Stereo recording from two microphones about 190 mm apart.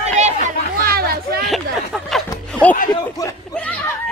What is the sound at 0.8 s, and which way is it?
Speech, 50° right (ahead or behind).